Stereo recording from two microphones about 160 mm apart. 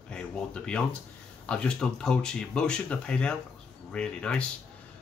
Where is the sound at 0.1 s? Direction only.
5° left (ahead or behind).